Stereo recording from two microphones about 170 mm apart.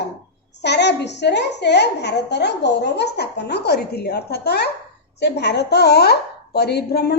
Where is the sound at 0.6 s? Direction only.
85° left; by 4.7 s 70° left (ahead or behind).